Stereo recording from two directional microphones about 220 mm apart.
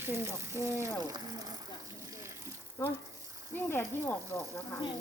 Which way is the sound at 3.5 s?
10° left (ahead or behind).